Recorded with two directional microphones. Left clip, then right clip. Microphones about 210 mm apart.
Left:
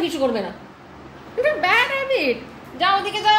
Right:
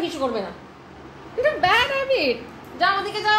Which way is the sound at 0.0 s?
40° left (ahead or behind).